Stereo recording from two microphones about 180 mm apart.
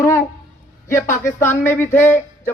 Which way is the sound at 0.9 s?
15° left (ahead or behind).